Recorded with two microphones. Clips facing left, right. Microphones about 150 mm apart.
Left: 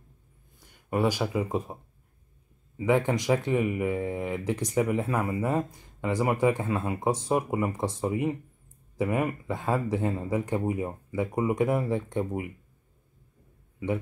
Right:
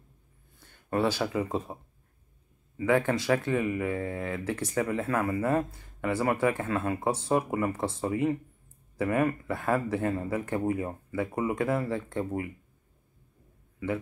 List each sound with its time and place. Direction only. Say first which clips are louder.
0.6 s speech: left 1 dB; 15° left (ahead or behind)
2.8 s speech: left 1 dB; 15° left (ahead or behind)